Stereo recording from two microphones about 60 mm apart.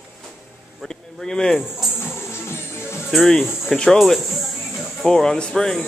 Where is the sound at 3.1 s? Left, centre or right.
Centre.